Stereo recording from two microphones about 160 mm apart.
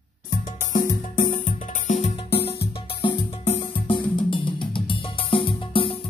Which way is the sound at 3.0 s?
35° left (ahead or behind).